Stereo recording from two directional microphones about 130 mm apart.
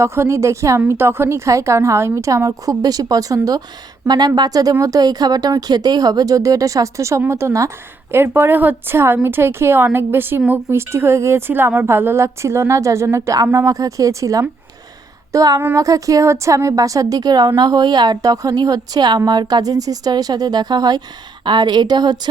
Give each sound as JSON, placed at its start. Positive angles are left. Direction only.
{"t": 0.0, "sound": "a woman's voice", "side_deg": -20}